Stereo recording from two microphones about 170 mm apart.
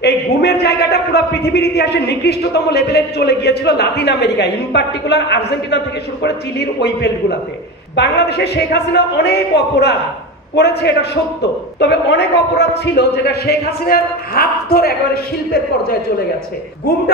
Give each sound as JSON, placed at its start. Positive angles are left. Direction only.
{"t": 0.0, "sound": "a man's voice", "side_deg": 75}